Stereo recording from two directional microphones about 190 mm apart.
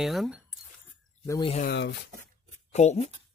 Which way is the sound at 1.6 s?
60° left (ahead or behind).